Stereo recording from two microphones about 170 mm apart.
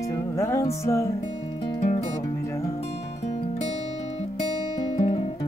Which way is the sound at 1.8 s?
40° left (ahead or behind).